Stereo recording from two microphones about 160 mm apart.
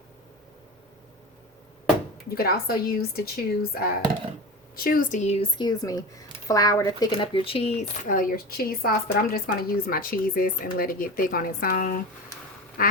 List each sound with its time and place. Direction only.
2.3 s speech: 70° left (ahead or behind)
4.8 s a woman's voice: 60° left (ahead or behind); by 5.5 s 45° left (ahead or behind)
5.5 s speech: 25° left (ahead or behind)
8.0 s a woman's voice: 60° left (ahead or behind)